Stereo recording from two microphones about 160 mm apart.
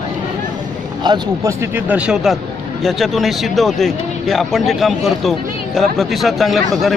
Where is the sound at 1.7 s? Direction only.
10° right (ahead or behind).